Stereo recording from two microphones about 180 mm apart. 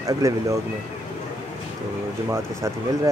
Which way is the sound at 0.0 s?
15° right (ahead or behind).